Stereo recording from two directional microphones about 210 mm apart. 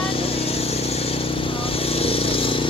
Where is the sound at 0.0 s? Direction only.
25° left (ahead or behind).